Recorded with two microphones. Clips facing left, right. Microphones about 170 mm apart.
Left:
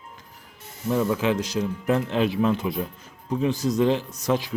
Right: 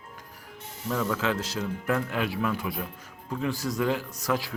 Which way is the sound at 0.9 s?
20° left (ahead or behind).